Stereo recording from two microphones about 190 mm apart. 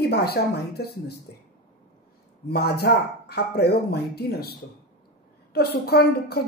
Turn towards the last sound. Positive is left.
turn(degrees=55)  # may be behind; listen again after turning